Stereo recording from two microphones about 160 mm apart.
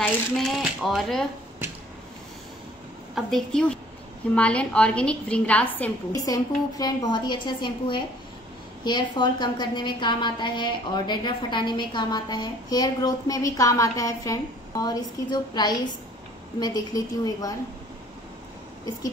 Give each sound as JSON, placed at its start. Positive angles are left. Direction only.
{"t": 0.0, "sound": "speech", "side_deg": 0}
{"t": 3.2, "sound": "a woman's voice", "side_deg": 0}
{"t": 6.2, "sound": "a woman's voice", "side_deg": 25}